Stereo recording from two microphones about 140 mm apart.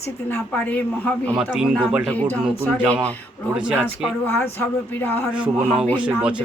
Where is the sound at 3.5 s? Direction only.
5° right (ahead or behind).